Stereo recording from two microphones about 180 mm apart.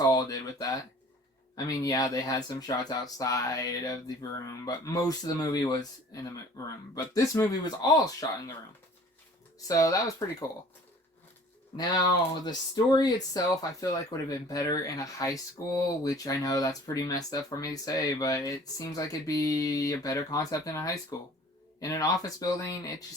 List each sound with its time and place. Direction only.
0.0 s speech: 20° left (ahead or behind)
9.6 s speech: 20° left (ahead or behind)
12.3 s speech: 25° left (ahead or behind)